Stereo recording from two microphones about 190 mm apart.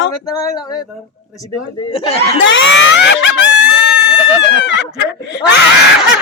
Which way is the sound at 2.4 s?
75° left (ahead or behind).